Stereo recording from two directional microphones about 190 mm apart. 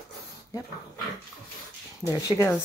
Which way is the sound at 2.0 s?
15° left (ahead or behind).